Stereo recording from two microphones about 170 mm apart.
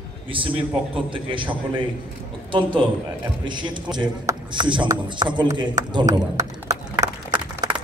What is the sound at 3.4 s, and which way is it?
A man's voice, 25° right (ahead or behind).